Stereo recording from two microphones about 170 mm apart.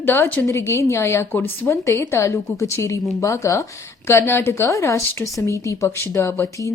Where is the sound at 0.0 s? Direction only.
10° left (ahead or behind).